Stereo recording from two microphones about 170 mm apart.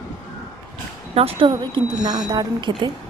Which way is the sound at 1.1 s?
35° right (ahead or behind).